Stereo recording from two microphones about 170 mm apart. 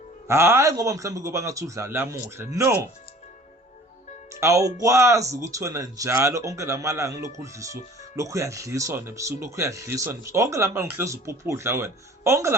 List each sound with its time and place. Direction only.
0.3 s speech: 15° right (ahead or behind)
4.3 s speech: 15° right (ahead or behind)